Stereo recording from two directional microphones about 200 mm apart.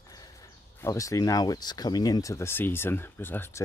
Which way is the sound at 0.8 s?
15° left (ahead or behind).